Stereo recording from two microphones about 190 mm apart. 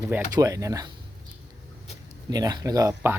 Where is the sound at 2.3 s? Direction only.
20° right (ahead or behind).